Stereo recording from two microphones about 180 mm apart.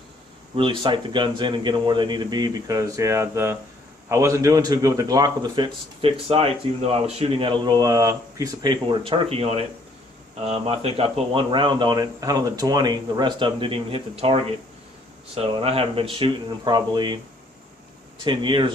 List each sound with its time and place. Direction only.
0.5 s a man's voice: 30° right (ahead or behind)
18.2 s a man's voice: 25° right (ahead or behind)